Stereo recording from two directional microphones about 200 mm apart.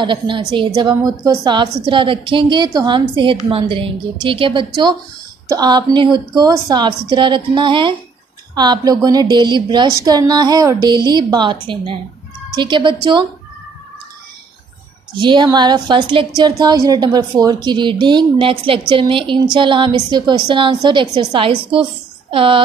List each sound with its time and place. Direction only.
0.0 s a woman's voice: 25° right (ahead or behind)
15.1 s a woman's voice: 25° right (ahead or behind)